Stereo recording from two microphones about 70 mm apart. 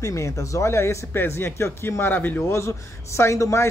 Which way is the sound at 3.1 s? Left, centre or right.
Left.